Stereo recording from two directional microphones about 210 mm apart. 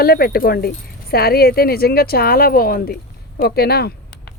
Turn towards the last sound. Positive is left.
turn(degrees=50)  # may be behind; listen again after turning